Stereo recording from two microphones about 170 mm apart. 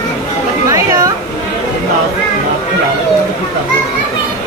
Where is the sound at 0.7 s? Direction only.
20° right (ahead or behind).